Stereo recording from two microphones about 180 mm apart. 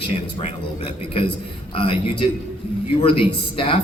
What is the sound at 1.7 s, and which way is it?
A man's voice, 30° left (ahead or behind).